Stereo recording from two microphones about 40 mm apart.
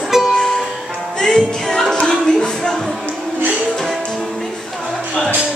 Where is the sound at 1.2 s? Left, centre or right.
Centre.